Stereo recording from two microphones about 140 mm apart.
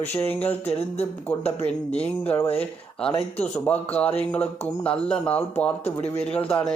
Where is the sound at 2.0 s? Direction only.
10° left (ahead or behind).